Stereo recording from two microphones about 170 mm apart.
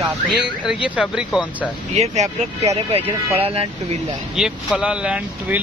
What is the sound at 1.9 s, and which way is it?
Speech, 40° right (ahead or behind).